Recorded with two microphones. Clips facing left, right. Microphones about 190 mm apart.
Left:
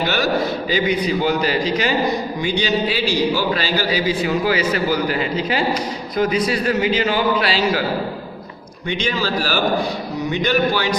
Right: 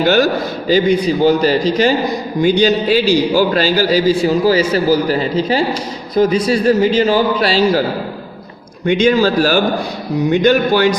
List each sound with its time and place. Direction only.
0.7 s a man's voice: 35° right (ahead or behind)
8.9 s a man's voice: 45° right (ahead or behind)